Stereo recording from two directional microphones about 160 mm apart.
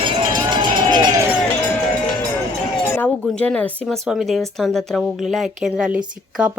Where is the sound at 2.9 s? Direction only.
10° left (ahead or behind).